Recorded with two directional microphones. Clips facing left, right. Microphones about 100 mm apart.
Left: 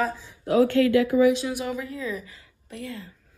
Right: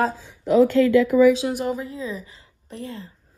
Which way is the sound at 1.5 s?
40° right (ahead or behind).